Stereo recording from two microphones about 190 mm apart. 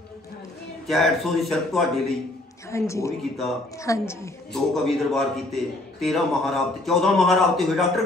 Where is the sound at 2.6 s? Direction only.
15° left (ahead or behind).